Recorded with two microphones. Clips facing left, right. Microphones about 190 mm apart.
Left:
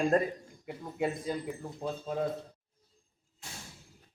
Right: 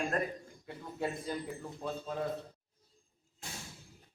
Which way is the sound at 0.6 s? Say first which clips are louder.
Left 4 dB; 20° left (ahead or behind).